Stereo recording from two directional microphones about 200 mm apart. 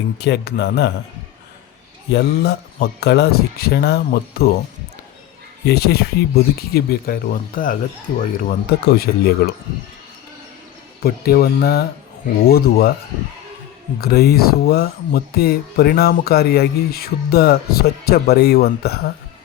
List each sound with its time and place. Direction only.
0.2 s speech: 55° left (ahead or behind)
2.1 s speech: 55° left (ahead or behind)
5.6 s speech: 50° left (ahead or behind)
11.0 s speech: 50° left (ahead or behind)
14.0 s speech: 50° left (ahead or behind)